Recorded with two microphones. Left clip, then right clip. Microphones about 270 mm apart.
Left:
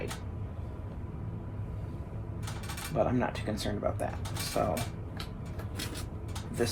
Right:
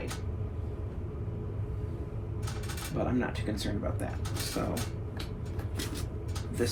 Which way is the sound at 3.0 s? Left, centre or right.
Left.